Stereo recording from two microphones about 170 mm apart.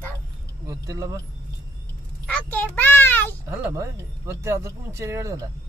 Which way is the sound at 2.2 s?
5° left (ahead or behind).